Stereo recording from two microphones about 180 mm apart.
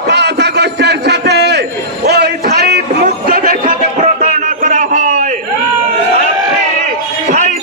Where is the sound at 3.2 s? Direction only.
50° right (ahead or behind).